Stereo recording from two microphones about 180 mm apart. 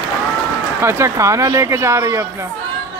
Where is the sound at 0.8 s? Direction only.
15° right (ahead or behind).